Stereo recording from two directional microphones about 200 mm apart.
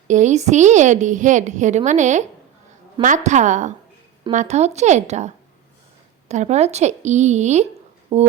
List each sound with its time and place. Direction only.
0.1 s a woman's voice: 35° right (ahead or behind)